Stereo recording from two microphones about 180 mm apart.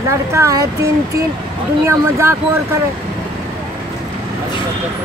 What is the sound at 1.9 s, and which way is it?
Speech, 15° right (ahead or behind).